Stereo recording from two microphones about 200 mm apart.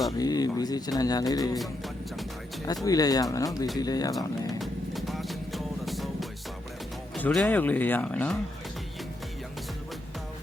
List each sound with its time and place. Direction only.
0.2 s speech: 20° left (ahead or behind)
1.5 s music: centre (ahead or behind)
2.8 s speech: 20° left (ahead or behind)
4.6 s music: centre (ahead or behind)
7.2 s speech: 10° left (ahead or behind)